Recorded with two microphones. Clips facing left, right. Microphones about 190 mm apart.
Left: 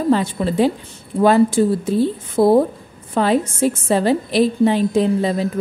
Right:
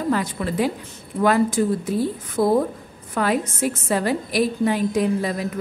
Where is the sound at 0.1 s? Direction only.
25° left (ahead or behind).